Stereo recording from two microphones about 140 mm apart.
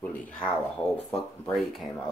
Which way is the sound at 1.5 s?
Centre (ahead or behind).